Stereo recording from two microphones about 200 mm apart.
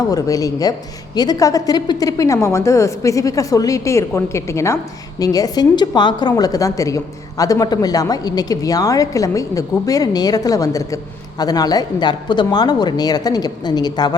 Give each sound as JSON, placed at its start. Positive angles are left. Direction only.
{"t": 0.1, "sound": "a woman's voice", "side_deg": 15}